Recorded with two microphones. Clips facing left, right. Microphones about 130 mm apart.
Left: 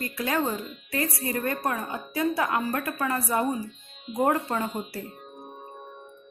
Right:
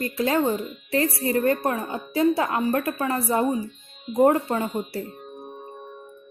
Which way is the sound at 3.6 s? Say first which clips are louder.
Right 4 dB; centre (ahead or behind).